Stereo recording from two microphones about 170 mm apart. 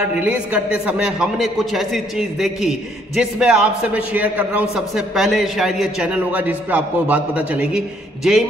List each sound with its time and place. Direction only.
0.2 s a man's voice: 10° right (ahead or behind)